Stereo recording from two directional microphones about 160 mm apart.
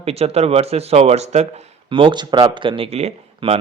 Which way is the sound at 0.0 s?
40° right (ahead or behind).